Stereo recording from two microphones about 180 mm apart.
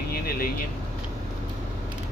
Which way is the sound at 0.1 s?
55° left (ahead or behind).